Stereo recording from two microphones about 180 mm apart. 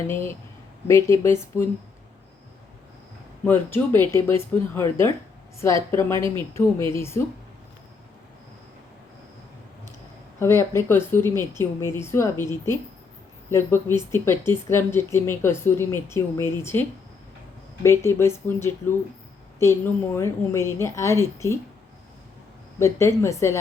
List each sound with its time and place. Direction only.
0.1 s speech: 15° left (ahead or behind)
3.4 s speech: 10° left (ahead or behind)
10.4 s speech: 15° left (ahead or behind)
17.8 s speech: 15° left (ahead or behind)
20.1 s speech: 15° left (ahead or behind)
22.8 s speech: 15° left (ahead or behind)